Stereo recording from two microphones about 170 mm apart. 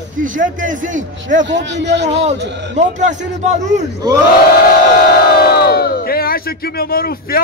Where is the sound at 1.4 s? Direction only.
90° right.